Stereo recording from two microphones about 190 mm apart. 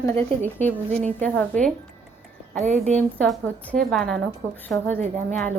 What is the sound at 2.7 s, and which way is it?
Speech, 35° right (ahead or behind).